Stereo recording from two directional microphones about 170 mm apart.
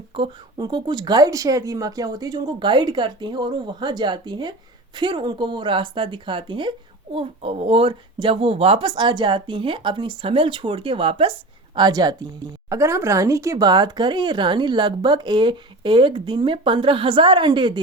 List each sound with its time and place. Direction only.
0.2 s speech: 25° right (ahead or behind)